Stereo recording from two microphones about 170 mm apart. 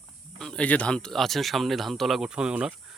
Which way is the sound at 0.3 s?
5° left (ahead or behind).